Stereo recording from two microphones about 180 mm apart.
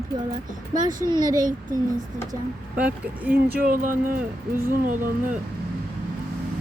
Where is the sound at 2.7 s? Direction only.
10° right (ahead or behind).